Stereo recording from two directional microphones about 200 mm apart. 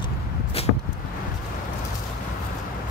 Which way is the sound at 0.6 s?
30° left (ahead or behind).